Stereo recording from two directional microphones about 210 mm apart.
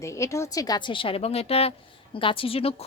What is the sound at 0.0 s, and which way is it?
Speech, 15° left (ahead or behind).